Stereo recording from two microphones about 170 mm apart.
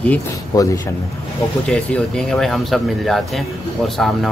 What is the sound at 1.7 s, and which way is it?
Speech, 5° left (ahead or behind).